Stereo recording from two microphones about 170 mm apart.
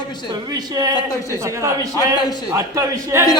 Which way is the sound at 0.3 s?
25° right (ahead or behind).